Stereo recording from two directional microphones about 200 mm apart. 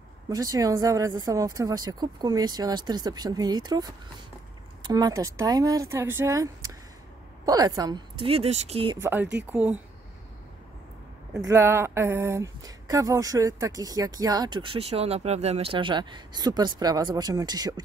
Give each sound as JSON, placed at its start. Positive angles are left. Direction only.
{"t": 0.3, "sound": "speech", "side_deg": -15}
{"t": 9.0, "sound": "speech", "side_deg": -10}
{"t": 11.4, "sound": "speech", "side_deg": -15}